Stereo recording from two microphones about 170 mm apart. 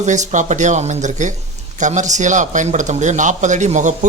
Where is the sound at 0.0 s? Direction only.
45° right (ahead or behind).